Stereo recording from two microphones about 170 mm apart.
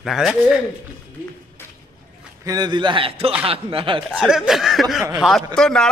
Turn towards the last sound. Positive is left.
turn(degrees=5)  # may be behind; listen again after turning